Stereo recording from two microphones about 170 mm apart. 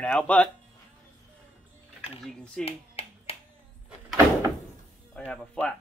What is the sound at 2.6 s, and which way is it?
Finger snapping, 35° left (ahead or behind).